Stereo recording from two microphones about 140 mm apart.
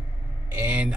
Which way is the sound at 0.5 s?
10° right (ahead or behind).